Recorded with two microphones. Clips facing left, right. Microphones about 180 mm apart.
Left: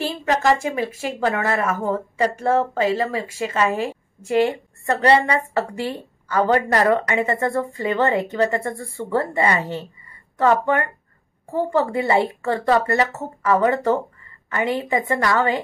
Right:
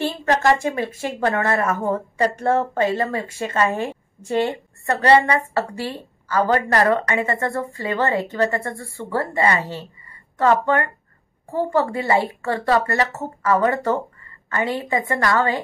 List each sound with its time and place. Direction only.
0.3 s speech: centre (ahead or behind)
0.9 s speech: 20° right (ahead or behind)
1.2 s speech: centre (ahead or behind)
5.0 s a woman's voice: 20° left (ahead or behind)